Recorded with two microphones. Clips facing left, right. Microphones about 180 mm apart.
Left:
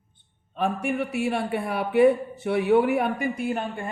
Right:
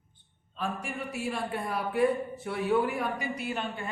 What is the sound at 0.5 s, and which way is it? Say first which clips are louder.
A man's voice: left 9 dB; 65° left (ahead or behind).